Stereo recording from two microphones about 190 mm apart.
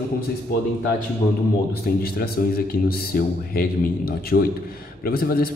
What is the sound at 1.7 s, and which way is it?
Speech, 55° left (ahead or behind).